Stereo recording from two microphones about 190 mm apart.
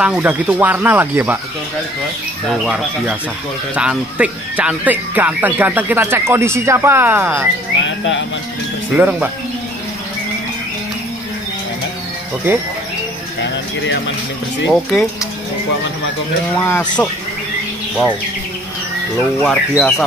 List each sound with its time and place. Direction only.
0.0 s speech: 10° right (ahead or behind)
2.6 s speech: 5° right (ahead or behind)
7.8 s speech: 75° left (ahead or behind)
8.9 s speech: 10° right (ahead or behind)
14.7 s speech: centre (ahead or behind)
16.5 s speech: 10° left (ahead or behind)
19.4 s speech: centre (ahead or behind)